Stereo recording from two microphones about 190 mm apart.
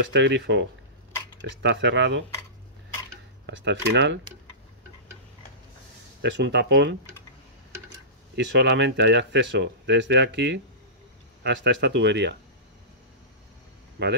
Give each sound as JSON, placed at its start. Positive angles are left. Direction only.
{"t": 0.1, "sound": "speech", "side_deg": -70}
{"t": 3.4, "sound": "speech", "side_deg": -65}
{"t": 6.2, "sound": "speech", "side_deg": -65}
{"t": 8.4, "sound": "speech", "side_deg": -65}
{"t": 14.0, "sound": "speech", "side_deg": -65}